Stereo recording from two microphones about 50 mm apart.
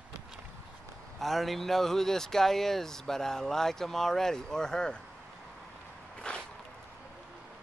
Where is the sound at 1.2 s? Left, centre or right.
Centre.